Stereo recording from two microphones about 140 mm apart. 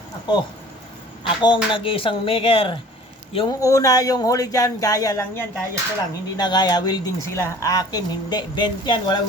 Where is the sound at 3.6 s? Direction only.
25° left (ahead or behind).